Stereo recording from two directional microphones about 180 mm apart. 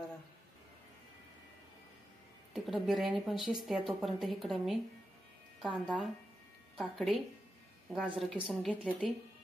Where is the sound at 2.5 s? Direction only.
Centre (ahead or behind).